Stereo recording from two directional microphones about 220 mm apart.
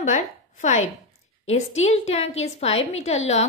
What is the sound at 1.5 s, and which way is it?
Speech, 30° left (ahead or behind).